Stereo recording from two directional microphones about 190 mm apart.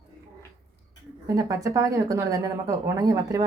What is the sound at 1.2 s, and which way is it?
A woman's voice, 15° right (ahead or behind).